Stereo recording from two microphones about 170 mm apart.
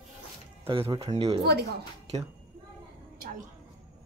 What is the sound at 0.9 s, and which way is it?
Speech, 35° right (ahead or behind).